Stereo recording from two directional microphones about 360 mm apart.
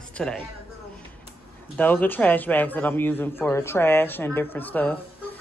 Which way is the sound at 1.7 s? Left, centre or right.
Centre.